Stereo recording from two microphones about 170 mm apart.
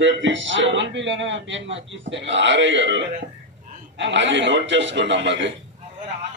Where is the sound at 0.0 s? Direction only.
90° right.